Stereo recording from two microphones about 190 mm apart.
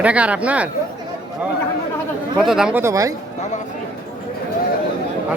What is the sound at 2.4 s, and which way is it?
Speech, 5° right (ahead or behind).